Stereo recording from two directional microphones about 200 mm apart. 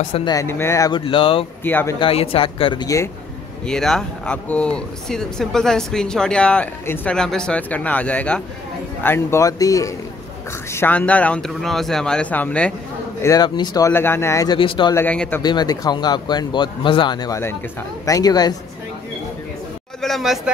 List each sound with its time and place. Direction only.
0.1 s speech: 20° left (ahead or behind)
1.6 s speech: 10° left (ahead or behind)
2.0 s speech: 25° left (ahead or behind)
3.6 s speech: 5° left (ahead or behind)
13.2 s speech: 20° left (ahead or behind)
15.0 s speech: 5° left (ahead or behind)
15.4 s speech: 20° left (ahead or behind)
20.0 s speech: centre (ahead or behind)